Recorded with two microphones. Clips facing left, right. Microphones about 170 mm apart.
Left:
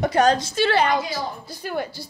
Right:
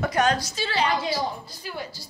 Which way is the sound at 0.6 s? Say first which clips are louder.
Left 6 dB; 55° left (ahead or behind).